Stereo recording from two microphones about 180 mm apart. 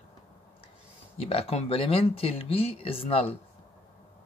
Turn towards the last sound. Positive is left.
turn(degrees=30)  # may be behind; listen again after turning